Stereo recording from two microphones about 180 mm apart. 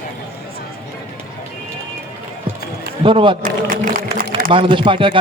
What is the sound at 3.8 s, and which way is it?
Speech, 50° right (ahead or behind).